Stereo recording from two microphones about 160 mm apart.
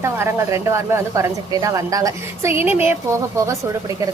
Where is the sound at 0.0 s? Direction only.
15° right (ahead or behind).